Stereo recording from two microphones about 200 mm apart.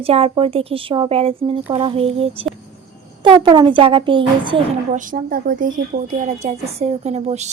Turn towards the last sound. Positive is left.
turn(degrees=-35)  # may be behind; listen again after turning